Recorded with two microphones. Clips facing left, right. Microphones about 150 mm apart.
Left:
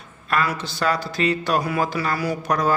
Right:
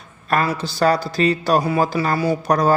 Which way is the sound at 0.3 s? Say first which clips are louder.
Right 3 dB; 35° right (ahead or behind).